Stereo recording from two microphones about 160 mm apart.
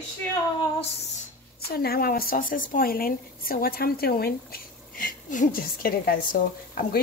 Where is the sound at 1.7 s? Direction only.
75° left (ahead or behind).